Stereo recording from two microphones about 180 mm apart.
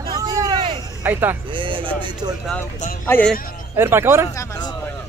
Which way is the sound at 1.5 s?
30° right (ahead or behind).